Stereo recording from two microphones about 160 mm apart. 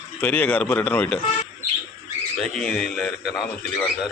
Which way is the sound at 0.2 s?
10° left (ahead or behind).